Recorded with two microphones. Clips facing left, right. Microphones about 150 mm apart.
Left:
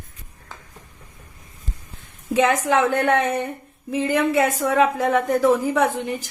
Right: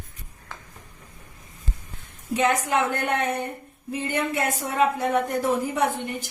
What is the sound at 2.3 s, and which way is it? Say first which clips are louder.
A woman's voice: left 4 dB; 90° left.